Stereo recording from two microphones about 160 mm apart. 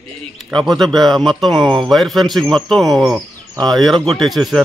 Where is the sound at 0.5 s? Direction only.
Centre (ahead or behind).